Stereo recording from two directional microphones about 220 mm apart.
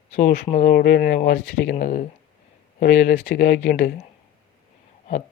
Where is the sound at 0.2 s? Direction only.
40° left (ahead or behind).